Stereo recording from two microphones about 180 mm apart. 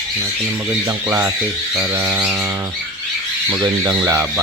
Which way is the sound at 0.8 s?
15° right (ahead or behind).